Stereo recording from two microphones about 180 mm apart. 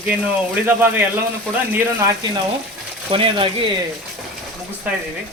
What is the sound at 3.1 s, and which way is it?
Speech, 30° right (ahead or behind).